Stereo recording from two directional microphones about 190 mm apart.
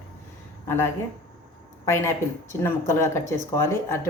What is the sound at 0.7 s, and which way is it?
A woman's voice, 15° left (ahead or behind).